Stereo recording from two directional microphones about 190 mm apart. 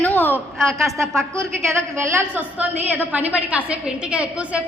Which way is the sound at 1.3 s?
15° right (ahead or behind).